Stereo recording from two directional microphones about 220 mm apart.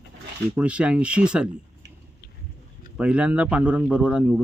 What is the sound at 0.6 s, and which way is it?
Speech, 5° right (ahead or behind).